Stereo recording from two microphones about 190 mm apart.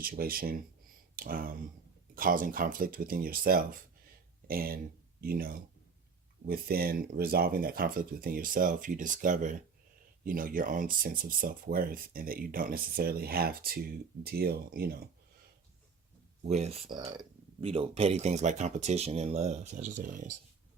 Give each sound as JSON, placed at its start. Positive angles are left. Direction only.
{"t": 0.0, "sound": "speech", "side_deg": -50}
{"t": 16.4, "sound": "speech", "side_deg": -35}